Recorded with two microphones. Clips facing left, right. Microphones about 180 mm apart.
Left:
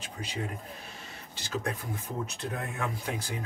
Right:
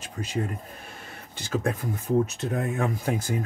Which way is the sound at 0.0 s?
45° right (ahead or behind).